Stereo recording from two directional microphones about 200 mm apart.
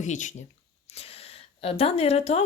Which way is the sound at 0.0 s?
40° left (ahead or behind).